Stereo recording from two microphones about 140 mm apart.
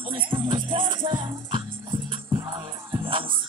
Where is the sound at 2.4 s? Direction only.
25° right (ahead or behind).